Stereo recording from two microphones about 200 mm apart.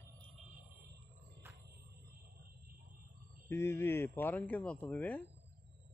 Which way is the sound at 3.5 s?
10° left (ahead or behind).